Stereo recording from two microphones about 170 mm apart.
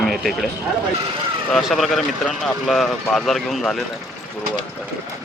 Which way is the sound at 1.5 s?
Centre (ahead or behind).